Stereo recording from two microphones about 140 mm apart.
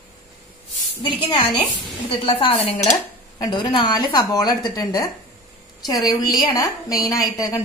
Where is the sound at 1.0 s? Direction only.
40° left (ahead or behind).